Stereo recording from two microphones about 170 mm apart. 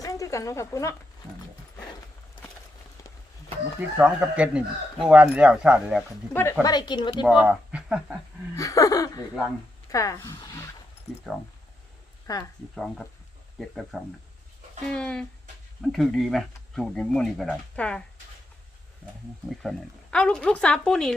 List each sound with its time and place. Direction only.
0.0 s speech: 20° left (ahead or behind)
3.0 s run: 20° left (ahead or behind)
3.8 s speech: 10° right (ahead or behind)
6.3 s a woman's voice: 15° left (ahead or behind)
7.4 s speech: 5° right (ahead or behind)
8.5 s a sound: 20° left (ahead or behind)
9.9 s a woman's voice: 20° left (ahead or behind)
11.3 s speech: centre (ahead or behind)
12.3 s a woman's voice: 20° left (ahead or behind)
12.7 s speech: centre (ahead or behind)
19.5 s speech: 5° left (ahead or behind)